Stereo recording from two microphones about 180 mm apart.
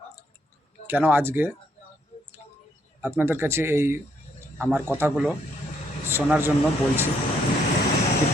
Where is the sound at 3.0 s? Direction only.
10° right (ahead or behind).